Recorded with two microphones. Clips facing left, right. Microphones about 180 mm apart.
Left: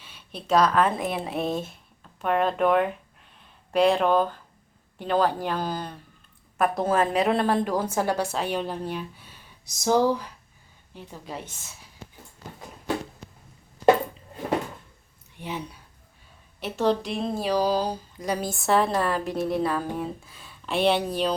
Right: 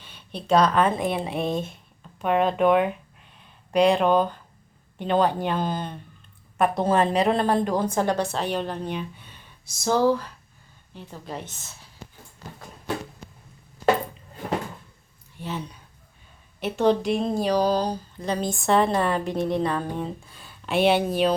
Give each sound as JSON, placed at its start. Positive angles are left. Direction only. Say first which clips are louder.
{"t": 0.0, "sound": "speech", "louder": "right 3 dB", "side_deg": 5}
{"t": 6.6, "sound": "speech", "louder": "right 2 dB", "side_deg": 0}
{"t": 9.6, "sound": "a woman's voice", "louder": "right 1 dB", "side_deg": 15}
{"t": 15.4, "sound": "speech", "louder": "right 1 dB", "side_deg": 10}
{"t": 16.6, "sound": "speech", "louder": "right 3 dB", "side_deg": 0}